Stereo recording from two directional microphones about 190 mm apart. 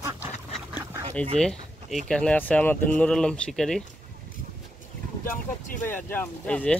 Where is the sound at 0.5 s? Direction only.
10° right (ahead or behind).